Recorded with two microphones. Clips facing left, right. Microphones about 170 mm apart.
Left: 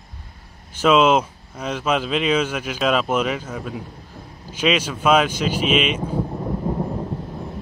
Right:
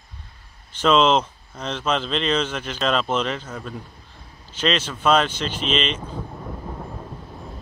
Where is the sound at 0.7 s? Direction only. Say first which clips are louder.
Left 2 dB; 10° left (ahead or behind).